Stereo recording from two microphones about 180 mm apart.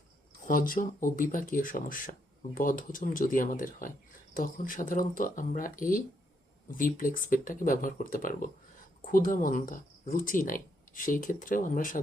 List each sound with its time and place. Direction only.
0.4 s speech: 50° left (ahead or behind)